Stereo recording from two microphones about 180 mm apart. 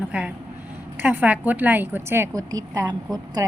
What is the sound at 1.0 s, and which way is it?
Speech, 10° right (ahead or behind).